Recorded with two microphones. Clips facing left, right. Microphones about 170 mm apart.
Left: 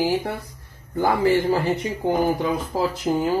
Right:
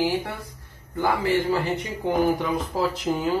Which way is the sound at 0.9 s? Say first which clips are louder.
Left 4 dB; 40° left (ahead or behind).